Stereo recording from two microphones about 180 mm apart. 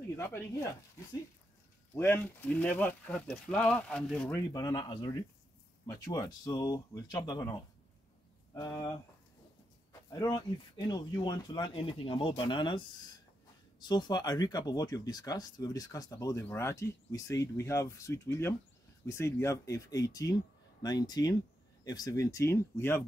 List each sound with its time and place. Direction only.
0.2 s speech: 15° left (ahead or behind)
4.5 s speech: 20° left (ahead or behind)
10.9 s speech: 20° left (ahead or behind)